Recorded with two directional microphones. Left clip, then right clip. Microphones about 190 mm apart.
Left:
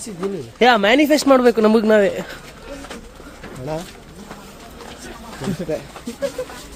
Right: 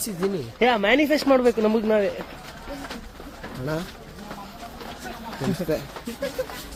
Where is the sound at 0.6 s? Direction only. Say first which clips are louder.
Left 6 dB; 35° left (ahead or behind).